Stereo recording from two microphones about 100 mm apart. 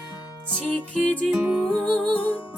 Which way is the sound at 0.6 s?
15° left (ahead or behind).